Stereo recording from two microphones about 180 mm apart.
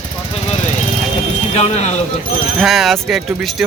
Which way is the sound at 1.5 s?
40° left (ahead or behind).